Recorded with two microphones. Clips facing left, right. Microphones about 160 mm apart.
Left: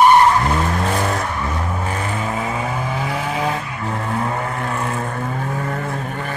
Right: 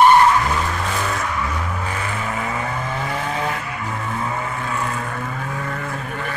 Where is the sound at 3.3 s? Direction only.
20° left (ahead or behind).